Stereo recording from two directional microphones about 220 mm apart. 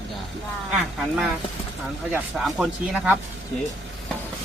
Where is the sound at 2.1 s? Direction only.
Centre (ahead or behind).